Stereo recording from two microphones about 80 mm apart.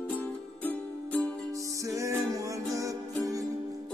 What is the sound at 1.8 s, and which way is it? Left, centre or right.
Music, right.